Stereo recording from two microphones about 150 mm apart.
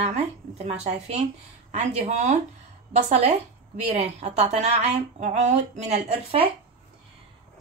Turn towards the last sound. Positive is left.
turn(degrees=-50)  # may be behind; listen again after turning